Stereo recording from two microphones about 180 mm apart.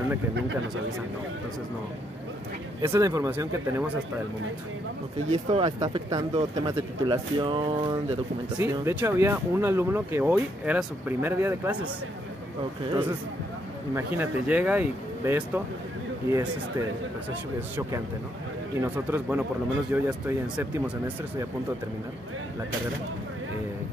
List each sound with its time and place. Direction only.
2.8 s speech: 15° right (ahead or behind)
5.3 s speech: 35° right (ahead or behind)
5.8 s speech: 20° right (ahead or behind)
8.5 s speech: 15° right (ahead or behind)
13.9 s speech: 10° right (ahead or behind)
18.8 s speech: 10° right (ahead or behind)